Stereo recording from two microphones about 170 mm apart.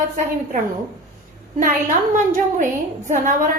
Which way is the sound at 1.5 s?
50° right (ahead or behind).